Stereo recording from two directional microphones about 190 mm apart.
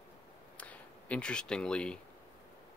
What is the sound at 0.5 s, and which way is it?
Speech, 5° left (ahead or behind).